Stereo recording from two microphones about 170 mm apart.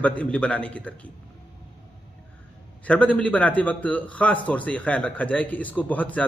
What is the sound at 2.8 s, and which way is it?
A man's voice, 5° left (ahead or behind).